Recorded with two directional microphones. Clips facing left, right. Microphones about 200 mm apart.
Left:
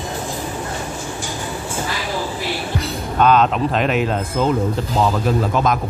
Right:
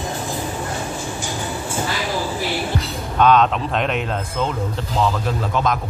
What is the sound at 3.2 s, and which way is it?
Speech, centre (ahead or behind).